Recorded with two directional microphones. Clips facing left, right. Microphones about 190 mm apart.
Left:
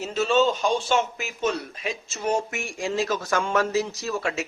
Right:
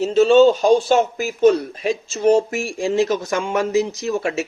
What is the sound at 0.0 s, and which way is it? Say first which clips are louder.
A man's voice: right 10 dB; 30° right (ahead or behind).